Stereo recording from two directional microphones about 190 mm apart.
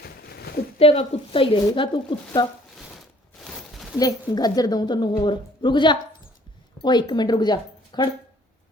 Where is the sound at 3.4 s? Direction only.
Centre (ahead or behind).